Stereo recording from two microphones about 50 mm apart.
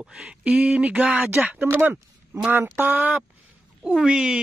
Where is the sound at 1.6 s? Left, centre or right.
Right.